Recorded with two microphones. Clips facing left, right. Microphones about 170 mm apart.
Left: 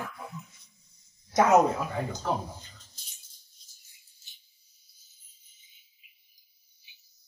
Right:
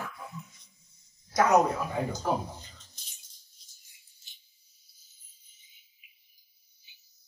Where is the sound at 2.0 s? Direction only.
10° right (ahead or behind).